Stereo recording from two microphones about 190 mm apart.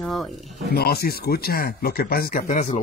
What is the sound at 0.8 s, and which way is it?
Speech, 55° left (ahead or behind).